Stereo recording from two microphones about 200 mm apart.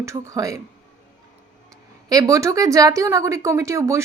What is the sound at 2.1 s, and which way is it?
A woman's voice, 15° right (ahead or behind).